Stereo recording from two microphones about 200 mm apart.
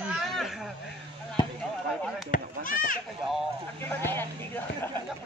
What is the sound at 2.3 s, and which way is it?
Chop, 45° left (ahead or behind).